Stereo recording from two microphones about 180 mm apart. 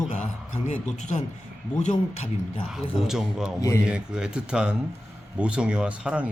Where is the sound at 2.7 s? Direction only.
Centre (ahead or behind).